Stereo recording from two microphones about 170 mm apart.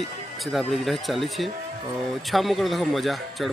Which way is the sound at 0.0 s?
Centre (ahead or behind).